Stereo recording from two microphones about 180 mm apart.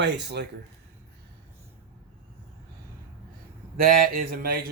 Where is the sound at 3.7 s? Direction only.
55° right (ahead or behind).